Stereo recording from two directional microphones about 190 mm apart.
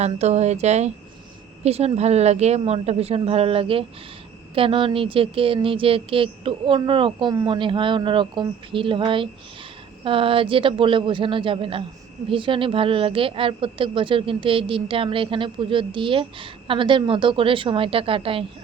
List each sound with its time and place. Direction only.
0.0 s a woman's voice: 35° right (ahead or behind)